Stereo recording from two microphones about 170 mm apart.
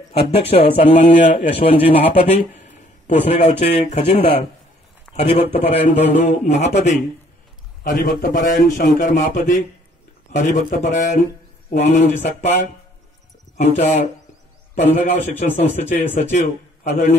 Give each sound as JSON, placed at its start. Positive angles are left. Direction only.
{"t": 0.3, "sound": "a man's voice", "side_deg": 35}
{"t": 5.1, "sound": "a man's voice", "side_deg": 40}
{"t": 7.8, "sound": "a man's voice", "side_deg": 55}
{"t": 13.6, "sound": "a man's voice", "side_deg": 40}